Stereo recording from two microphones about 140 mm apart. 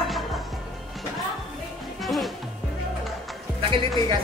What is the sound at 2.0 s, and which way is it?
Speech, centre (ahead or behind).